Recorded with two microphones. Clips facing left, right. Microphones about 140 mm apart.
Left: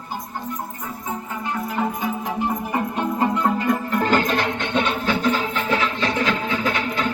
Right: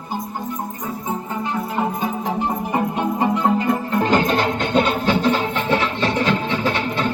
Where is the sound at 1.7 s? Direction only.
25° right (ahead or behind).